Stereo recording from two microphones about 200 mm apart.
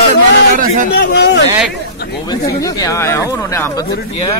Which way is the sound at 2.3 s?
20° left (ahead or behind).